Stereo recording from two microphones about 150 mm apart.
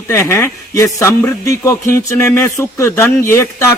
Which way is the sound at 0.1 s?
20° left (ahead or behind).